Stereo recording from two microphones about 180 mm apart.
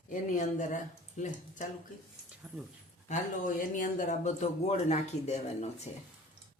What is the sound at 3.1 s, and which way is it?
Speech, 45° left (ahead or behind).